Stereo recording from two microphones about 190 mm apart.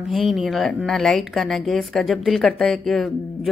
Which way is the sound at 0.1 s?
Centre (ahead or behind).